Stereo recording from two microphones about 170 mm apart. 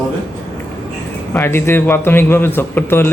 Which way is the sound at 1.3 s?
15° left (ahead or behind).